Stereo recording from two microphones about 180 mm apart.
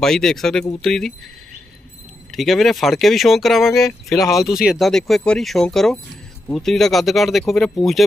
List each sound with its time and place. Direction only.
0.0 s speech: centre (ahead or behind)
2.3 s speech: centre (ahead or behind)